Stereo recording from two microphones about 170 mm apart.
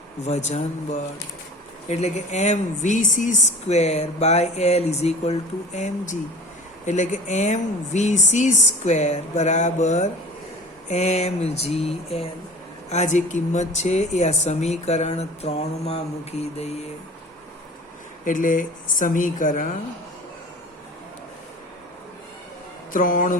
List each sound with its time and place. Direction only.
0.2 s speech: 40° left (ahead or behind)
18.3 s speech: 50° left (ahead or behind)
22.9 s speech: 55° left (ahead or behind)